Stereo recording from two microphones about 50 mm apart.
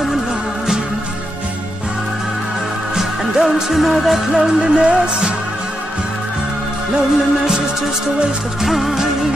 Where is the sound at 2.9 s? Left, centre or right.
Centre.